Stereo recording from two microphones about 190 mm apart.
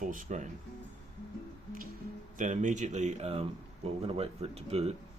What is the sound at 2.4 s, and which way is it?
Speech, 40° right (ahead or behind).